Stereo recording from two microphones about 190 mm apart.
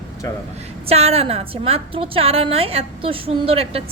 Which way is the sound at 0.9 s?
35° right (ahead or behind).